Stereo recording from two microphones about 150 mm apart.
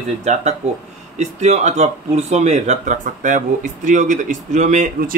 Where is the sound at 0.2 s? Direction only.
50° right (ahead or behind).